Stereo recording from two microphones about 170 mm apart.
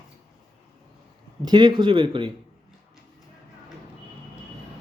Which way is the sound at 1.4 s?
25° right (ahead or behind).